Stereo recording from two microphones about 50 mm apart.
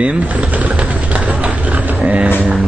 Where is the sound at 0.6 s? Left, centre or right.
Right.